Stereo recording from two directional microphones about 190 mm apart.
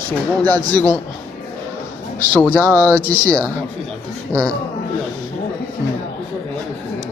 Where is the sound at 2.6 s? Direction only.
15° right (ahead or behind).